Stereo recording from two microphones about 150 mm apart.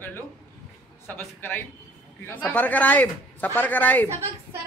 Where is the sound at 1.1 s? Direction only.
15° left (ahead or behind).